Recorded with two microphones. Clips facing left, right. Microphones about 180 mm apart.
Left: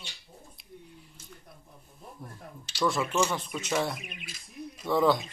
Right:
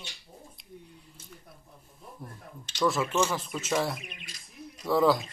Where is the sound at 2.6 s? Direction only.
5° left (ahead or behind).